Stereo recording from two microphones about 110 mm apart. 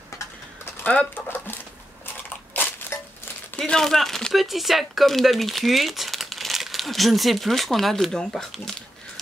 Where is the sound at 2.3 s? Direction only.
15° left (ahead or behind).